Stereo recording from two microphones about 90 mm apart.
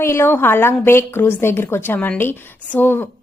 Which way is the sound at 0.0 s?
30° left (ahead or behind).